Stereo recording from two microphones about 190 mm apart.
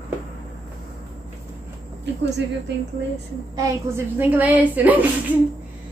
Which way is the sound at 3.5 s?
15° right (ahead or behind).